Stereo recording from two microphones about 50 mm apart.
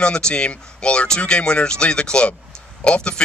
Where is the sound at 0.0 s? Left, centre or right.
Centre.